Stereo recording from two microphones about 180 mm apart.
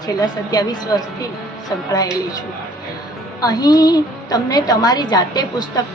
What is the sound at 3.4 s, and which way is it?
A woman's voice, 20° left (ahead or behind).